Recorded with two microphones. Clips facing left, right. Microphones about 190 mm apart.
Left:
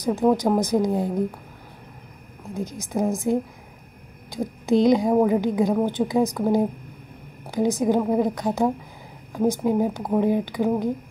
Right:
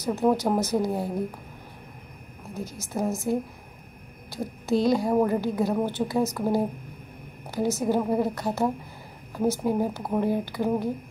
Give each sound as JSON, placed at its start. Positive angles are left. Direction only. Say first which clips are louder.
{"t": 0.2, "sound": "speech", "louder": "left 3 dB", "side_deg": -5}
{"t": 0.6, "sound": "a woman's voice", "louder": "left 4 dB", "side_deg": 15}
{"t": 2.5, "sound": "a woman's voice", "louder": "left 5 dB", "side_deg": 15}
{"t": 4.3, "sound": "a sound", "louder": "left 5 dB", "side_deg": 15}
{"t": 4.8, "sound": "a woman's voice", "louder": "left 4 dB", "side_deg": 15}